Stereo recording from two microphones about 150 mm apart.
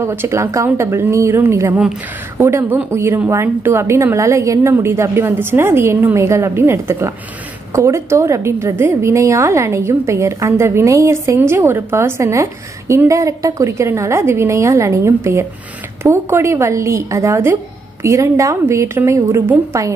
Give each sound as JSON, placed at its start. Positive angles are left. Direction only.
{"t": 0.0, "sound": "a woman's voice", "side_deg": -15}